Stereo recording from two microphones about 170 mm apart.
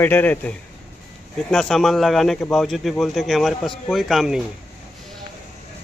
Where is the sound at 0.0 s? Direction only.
10° left (ahead or behind).